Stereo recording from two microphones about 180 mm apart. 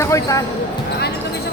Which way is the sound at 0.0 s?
15° left (ahead or behind).